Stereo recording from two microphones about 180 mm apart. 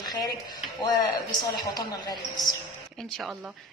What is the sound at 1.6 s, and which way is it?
Speech, 20° left (ahead or behind).